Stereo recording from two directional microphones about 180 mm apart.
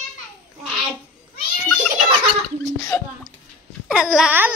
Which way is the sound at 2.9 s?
10° left (ahead or behind).